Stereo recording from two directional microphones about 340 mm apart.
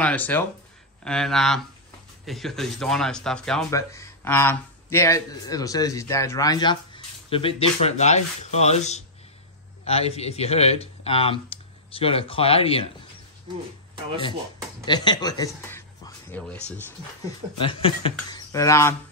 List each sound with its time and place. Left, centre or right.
0.0 s speech: centre
14.9 s speech: centre
17.6 s speech: centre